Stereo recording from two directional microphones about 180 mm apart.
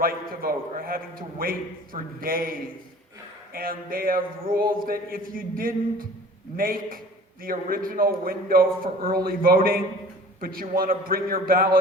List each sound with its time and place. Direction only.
0.0 s a man's voice: 55° right (ahead or behind)